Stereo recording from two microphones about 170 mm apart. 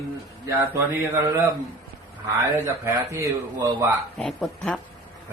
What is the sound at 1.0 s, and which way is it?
A man's voice, 15° right (ahead or behind).